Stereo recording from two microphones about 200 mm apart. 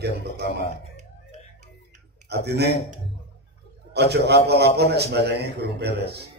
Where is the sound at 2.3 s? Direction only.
55° right (ahead or behind).